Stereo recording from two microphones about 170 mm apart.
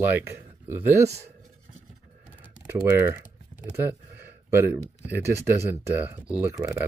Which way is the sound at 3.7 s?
10° right (ahead or behind).